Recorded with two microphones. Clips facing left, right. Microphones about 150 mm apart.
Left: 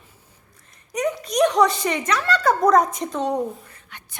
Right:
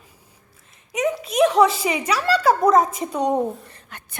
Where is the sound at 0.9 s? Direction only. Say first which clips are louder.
Right 1 dB; centre (ahead or behind).